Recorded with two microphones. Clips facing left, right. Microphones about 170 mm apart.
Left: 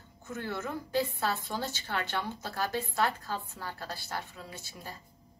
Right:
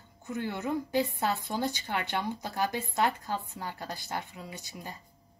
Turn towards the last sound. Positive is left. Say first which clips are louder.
# right 2 dB
turn(degrees=-20)  # may be behind; listen again after turning